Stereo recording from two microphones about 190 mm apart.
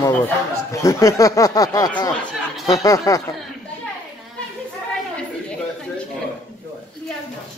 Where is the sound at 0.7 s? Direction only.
15° left (ahead or behind).